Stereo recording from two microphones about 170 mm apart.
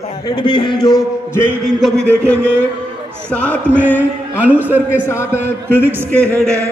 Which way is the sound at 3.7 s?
10° right (ahead or behind).